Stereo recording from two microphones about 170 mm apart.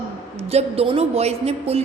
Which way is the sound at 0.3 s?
35° right (ahead or behind).